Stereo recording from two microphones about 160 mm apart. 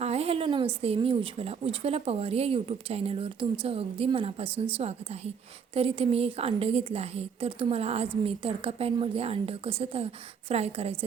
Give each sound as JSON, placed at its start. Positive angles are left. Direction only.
{"t": 0.0, "sound": "a woman's voice", "side_deg": -40}